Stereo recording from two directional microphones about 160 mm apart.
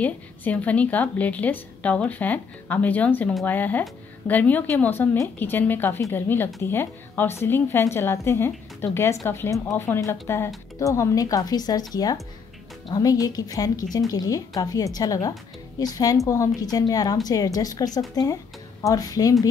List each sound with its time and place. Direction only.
0.0 s a woman's voice: 10° left (ahead or behind)